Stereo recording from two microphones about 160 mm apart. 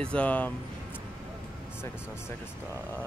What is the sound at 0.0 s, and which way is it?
Speech, 5° left (ahead or behind).